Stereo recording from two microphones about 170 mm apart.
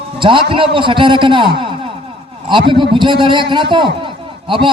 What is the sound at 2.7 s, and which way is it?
A man's voice, 30° right (ahead or behind).